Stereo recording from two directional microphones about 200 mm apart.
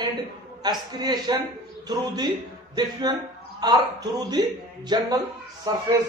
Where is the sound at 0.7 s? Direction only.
20° right (ahead or behind).